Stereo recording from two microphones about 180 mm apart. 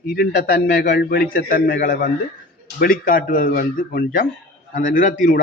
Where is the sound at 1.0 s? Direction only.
60° left (ahead or behind).